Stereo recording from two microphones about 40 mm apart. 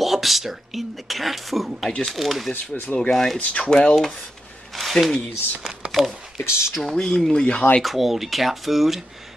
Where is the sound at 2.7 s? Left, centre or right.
Left.